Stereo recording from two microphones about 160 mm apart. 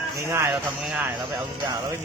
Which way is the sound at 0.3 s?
15° right (ahead or behind).